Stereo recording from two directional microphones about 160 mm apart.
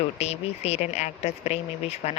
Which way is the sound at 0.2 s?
40° left (ahead or behind).